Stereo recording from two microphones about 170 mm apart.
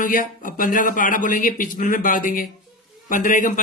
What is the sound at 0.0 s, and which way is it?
Speech, 50° left (ahead or behind).